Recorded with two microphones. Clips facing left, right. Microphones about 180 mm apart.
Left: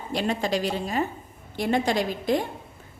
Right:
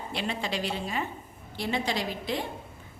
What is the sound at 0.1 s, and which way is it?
A woman's voice, 45° left (ahead or behind).